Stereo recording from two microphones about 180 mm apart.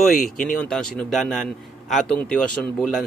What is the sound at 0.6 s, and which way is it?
Speech, 5° left (ahead or behind).